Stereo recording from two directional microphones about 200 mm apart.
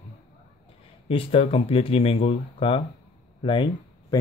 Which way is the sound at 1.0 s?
30° left (ahead or behind).